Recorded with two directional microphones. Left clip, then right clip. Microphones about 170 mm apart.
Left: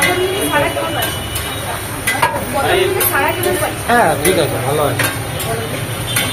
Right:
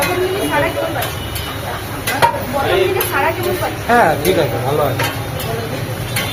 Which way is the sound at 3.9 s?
Centre (ahead or behind).